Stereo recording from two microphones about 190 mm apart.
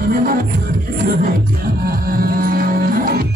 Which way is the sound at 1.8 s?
50° right (ahead or behind).